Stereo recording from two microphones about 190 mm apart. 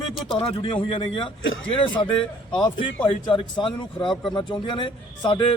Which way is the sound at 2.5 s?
25° left (ahead or behind).